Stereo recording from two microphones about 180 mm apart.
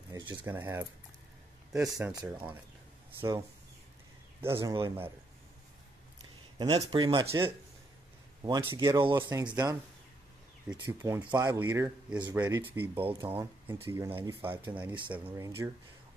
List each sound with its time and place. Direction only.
0.1 s a sound: 25° right (ahead or behind)
0.5 s speech: 15° right (ahead or behind)
6.6 s speech: 30° right (ahead or behind)
10.8 s speech: 15° right (ahead or behind)